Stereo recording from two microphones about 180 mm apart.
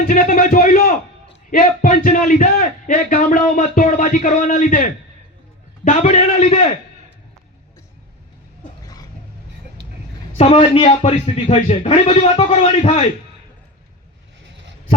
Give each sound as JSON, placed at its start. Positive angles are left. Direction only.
{"t": 0.1, "sound": "a man's voice", "side_deg": 45}
{"t": 10.3, "sound": "a man's voice", "side_deg": 35}